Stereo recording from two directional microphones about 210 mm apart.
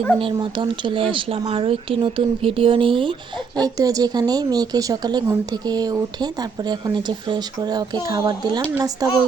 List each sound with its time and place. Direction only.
0.2 s speech: 25° right (ahead or behind)